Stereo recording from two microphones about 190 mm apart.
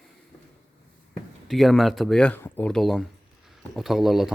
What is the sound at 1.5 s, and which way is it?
Speech, centre (ahead or behind).